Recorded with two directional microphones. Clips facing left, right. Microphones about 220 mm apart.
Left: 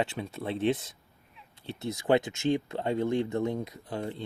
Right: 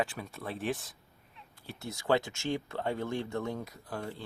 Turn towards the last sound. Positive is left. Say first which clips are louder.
# left 4 dB
turn(degrees=20)  # may be behind; listen again after turning